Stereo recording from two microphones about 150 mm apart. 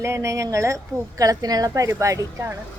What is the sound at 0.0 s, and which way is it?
A woman's voice, 20° right (ahead or behind).